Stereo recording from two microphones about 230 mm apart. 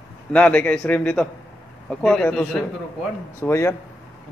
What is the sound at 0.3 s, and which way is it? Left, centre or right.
A man's voice, centre.